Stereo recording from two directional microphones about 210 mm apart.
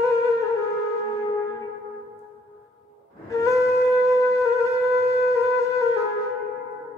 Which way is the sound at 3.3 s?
15° left (ahead or behind).